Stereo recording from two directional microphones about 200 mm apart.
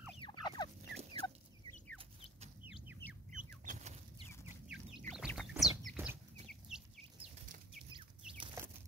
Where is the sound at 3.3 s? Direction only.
40° right (ahead or behind).